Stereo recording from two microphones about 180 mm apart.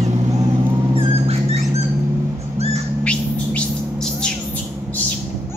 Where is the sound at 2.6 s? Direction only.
35° right (ahead or behind).